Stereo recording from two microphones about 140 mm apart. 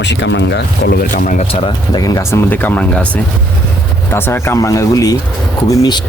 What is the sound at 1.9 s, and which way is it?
Speech, 25° left (ahead or behind).